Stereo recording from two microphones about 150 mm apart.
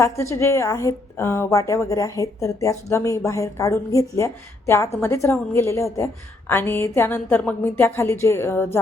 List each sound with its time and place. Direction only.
0.0 s a woman's voice: 20° left (ahead or behind)